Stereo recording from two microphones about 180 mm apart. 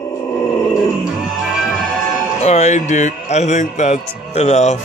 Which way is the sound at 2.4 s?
35° left (ahead or behind).